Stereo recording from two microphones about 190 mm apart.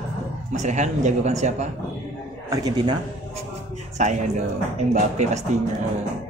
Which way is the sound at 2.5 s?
20° right (ahead or behind).